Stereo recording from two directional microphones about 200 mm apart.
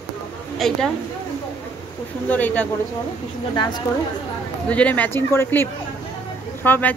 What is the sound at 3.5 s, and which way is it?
Speech, 20° left (ahead or behind).